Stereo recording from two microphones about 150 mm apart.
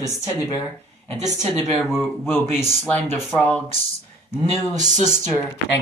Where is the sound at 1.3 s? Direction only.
20° left (ahead or behind).